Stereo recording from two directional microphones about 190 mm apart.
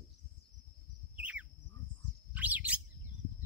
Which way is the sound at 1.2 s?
5° right (ahead or behind).